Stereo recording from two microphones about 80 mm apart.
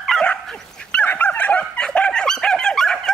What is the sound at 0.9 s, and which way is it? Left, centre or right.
Dog, centre.